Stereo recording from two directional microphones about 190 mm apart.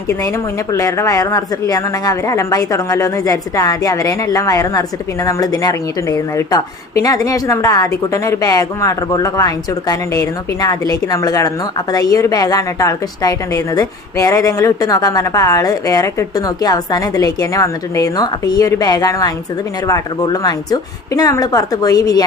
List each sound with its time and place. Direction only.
0.7 s a woman's voice: 15° left (ahead or behind)